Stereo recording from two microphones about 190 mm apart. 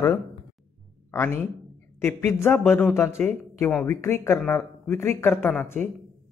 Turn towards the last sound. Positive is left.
turn(degrees=10)  # may be behind; listen again after turning